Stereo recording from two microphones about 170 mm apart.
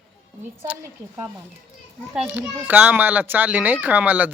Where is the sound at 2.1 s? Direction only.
10° right (ahead or behind).